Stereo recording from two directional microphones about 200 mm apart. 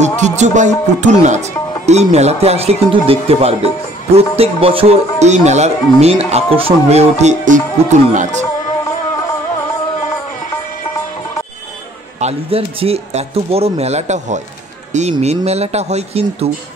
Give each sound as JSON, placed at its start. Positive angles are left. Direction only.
{"t": 0.0, "sound": "speech", "side_deg": -35}
{"t": 12.2, "sound": "speech", "side_deg": -30}